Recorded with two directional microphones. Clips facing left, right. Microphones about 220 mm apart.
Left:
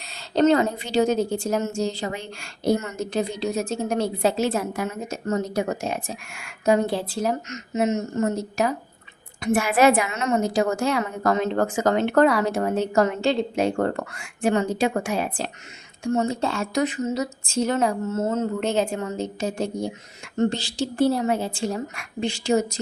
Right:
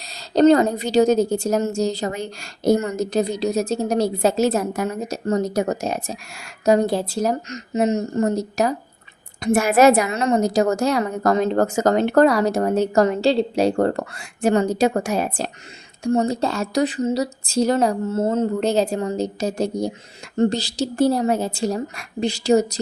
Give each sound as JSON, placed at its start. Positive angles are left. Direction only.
{"t": 0.0, "sound": "a woman's voice", "side_deg": -40}